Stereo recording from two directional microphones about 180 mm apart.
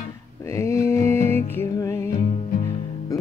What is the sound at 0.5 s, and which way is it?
Music, 15° left (ahead or behind).